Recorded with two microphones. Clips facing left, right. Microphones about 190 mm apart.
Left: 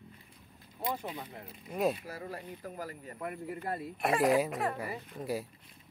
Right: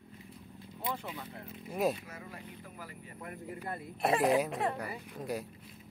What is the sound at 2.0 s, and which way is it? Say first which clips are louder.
Speech: left 6 dB; 35° left (ahead or behind).